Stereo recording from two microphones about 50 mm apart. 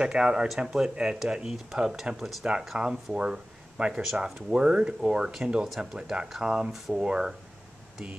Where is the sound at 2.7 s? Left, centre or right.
Right.